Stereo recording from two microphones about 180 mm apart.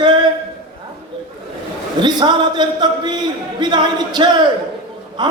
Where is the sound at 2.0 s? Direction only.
25° right (ahead or behind).